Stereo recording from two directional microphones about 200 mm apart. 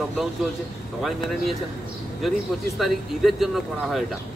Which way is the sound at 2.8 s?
Centre (ahead or behind).